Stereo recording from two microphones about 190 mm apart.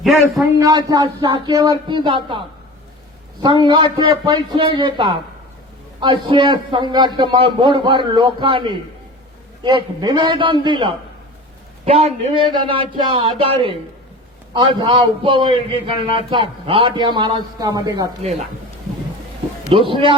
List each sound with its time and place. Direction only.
0.0 s a man's voice: centre (ahead or behind)
0.6 s a man's voice: 20° right (ahead or behind)
3.7 s a man's voice: 25° right (ahead or behind)
18.2 s a man's voice: 35° right (ahead or behind)
19.7 s a man's voice: 25° right (ahead or behind)